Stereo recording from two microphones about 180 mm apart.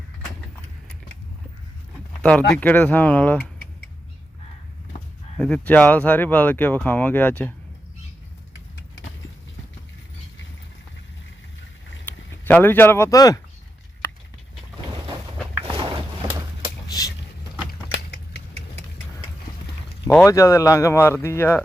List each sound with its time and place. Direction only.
2.2 s speech: 10° left (ahead or behind)
5.4 s speech: 5° left (ahead or behind)
12.0 s speech: 10° left (ahead or behind)
15.7 s a sound: 30° right (ahead or behind)
20.1 s speech: 15° left (ahead or behind)